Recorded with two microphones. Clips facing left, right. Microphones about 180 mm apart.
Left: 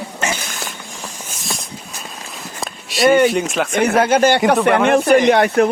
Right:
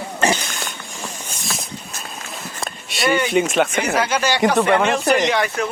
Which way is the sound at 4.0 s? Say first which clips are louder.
Left 5 dB; 55° left (ahead or behind).